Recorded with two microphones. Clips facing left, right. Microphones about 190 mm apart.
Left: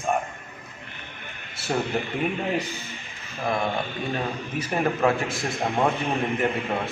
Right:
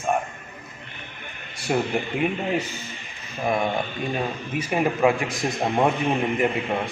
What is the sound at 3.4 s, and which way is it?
A man's voice, 15° right (ahead or behind).